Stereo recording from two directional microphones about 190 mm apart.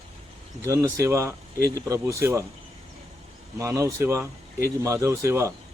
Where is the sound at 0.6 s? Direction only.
15° right (ahead or behind).